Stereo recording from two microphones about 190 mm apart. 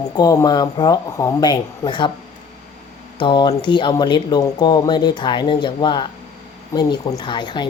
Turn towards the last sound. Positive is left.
turn(degrees=25)  # may be behind; listen again after turning